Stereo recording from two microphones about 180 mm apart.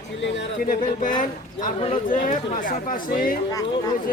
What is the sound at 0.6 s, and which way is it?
Speech, 45° left (ahead or behind).